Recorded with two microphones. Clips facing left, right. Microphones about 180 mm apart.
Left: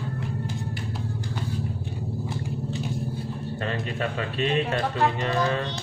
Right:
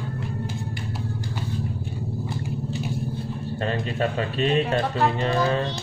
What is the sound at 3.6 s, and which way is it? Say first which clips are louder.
Speech: right 4 dB; 30° right (ahead or behind).